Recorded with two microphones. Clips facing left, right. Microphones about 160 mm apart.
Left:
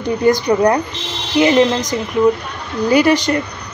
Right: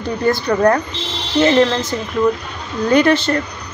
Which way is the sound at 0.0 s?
15° left (ahead or behind).